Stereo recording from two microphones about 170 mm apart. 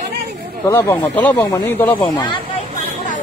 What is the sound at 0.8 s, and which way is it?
Speech, 10° left (ahead or behind).